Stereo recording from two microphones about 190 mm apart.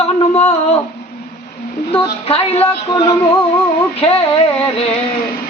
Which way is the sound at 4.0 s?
30° left (ahead or behind).